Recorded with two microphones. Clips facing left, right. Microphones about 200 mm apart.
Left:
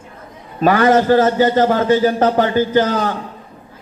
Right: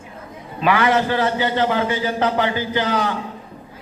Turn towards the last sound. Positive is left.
turn(degrees=45)  # may be behind; listen again after turning